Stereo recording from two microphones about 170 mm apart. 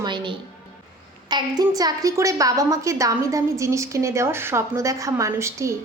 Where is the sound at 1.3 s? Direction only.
25° right (ahead or behind).